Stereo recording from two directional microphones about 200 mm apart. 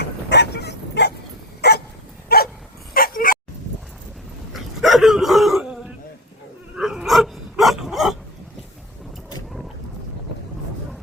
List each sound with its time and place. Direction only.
0.0 s bow-wow: 55° left (ahead or behind)
1.6 s dog: 55° left (ahead or behind)
4.5 s dog: centre (ahead or behind)
6.7 s dog: centre (ahead or behind)